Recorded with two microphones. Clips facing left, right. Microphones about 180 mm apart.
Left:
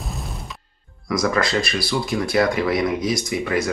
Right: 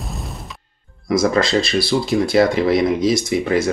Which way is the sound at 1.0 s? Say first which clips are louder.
Right 4 dB; 30° right (ahead or behind).